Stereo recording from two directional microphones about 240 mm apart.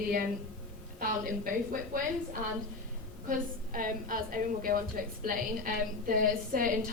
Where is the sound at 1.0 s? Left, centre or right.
Right.